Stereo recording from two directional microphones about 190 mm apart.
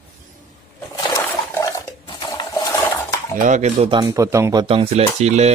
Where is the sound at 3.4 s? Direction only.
40° right (ahead or behind).